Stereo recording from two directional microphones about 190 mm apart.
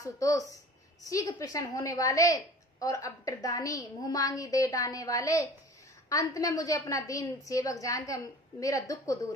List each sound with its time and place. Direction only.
0.0 s a woman's voice: 15° left (ahead or behind)